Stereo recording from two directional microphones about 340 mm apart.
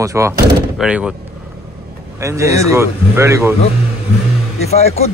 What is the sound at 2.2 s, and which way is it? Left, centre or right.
A man's voice, centre.